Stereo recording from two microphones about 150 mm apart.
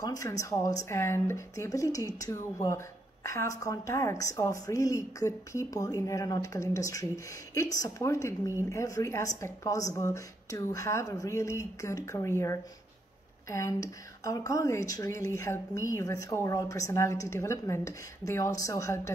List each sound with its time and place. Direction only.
0.0 s a woman's voice: 20° left (ahead or behind)